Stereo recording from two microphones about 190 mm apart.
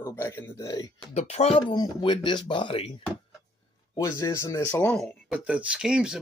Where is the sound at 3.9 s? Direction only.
15° left (ahead or behind).